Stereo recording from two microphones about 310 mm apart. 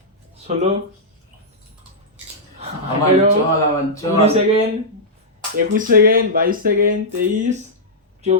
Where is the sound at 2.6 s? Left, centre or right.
Centre.